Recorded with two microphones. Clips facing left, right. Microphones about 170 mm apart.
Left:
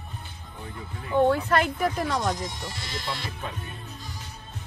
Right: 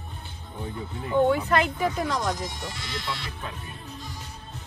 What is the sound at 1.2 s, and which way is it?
Speech, centre (ahead or behind).